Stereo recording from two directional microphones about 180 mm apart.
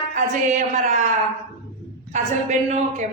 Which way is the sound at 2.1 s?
40° right (ahead or behind).